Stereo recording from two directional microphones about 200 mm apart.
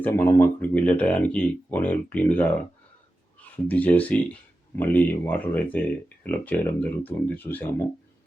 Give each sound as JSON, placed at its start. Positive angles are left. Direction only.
{"t": 0.0, "sound": "speech", "side_deg": 10}
{"t": 3.5, "sound": "speech", "side_deg": 10}